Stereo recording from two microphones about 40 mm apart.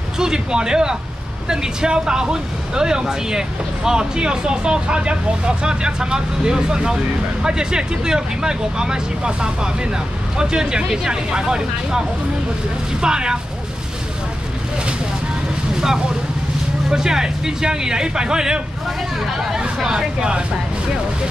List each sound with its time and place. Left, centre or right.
0.2 s speech: centre
13.0 s speech: right
16.9 s speech: centre